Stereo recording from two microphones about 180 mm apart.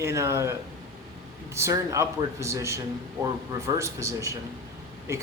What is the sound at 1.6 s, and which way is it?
Speech, 15° right (ahead or behind).